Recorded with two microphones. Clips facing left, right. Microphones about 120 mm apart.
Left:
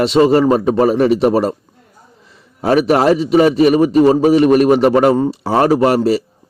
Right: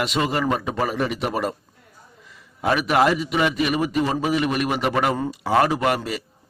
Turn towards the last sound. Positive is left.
turn(degrees=35)  # may be behind; listen again after turning